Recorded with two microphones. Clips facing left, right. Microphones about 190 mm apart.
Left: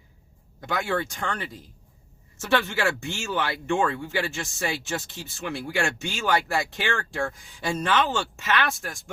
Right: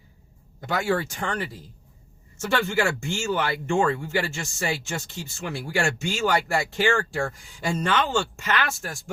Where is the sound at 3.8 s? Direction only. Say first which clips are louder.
Right 2 dB; centre (ahead or behind).